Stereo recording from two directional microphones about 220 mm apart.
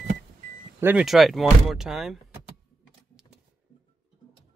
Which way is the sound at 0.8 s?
5° right (ahead or behind).